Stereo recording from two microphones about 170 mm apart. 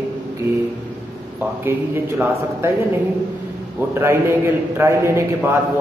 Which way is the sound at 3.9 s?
15° right (ahead or behind).